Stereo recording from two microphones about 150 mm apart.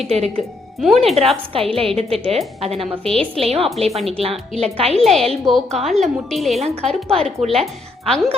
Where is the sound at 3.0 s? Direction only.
5° left (ahead or behind).